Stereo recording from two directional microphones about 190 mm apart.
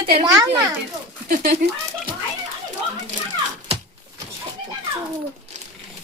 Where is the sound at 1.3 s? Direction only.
45° right (ahead or behind).